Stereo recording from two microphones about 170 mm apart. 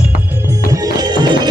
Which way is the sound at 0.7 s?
25° right (ahead or behind).